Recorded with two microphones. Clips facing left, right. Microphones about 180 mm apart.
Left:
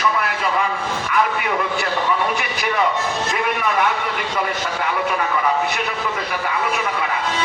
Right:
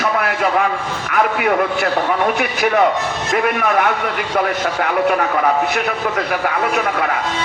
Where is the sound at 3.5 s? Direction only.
55° right (ahead or behind).